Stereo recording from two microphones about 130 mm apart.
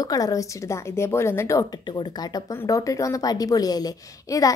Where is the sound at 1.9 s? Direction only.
35° left (ahead or behind).